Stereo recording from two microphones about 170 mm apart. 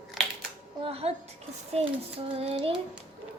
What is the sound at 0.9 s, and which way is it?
Speech, 35° right (ahead or behind).